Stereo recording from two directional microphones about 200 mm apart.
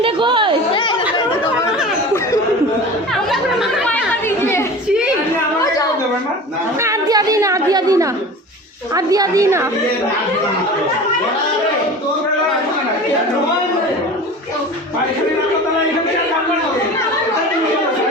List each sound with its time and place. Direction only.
0.0 s speech: 25° right (ahead or behind)
0.7 s chatter: 25° left (ahead or behind)
3.2 s chatter: 5° left (ahead or behind)
6.7 s chatter: 15° right (ahead or behind)
9.0 s a woman's voice: 15° right (ahead or behind)